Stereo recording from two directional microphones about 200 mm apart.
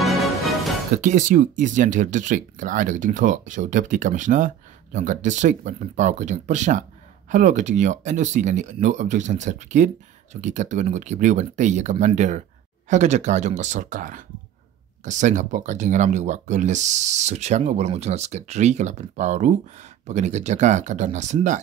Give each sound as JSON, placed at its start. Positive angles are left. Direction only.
{"t": 0.0, "sound": "music", "side_deg": 0}
{"t": 1.0, "sound": "speech", "side_deg": -40}